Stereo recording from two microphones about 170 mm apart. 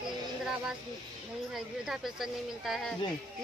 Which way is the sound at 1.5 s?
Centre (ahead or behind).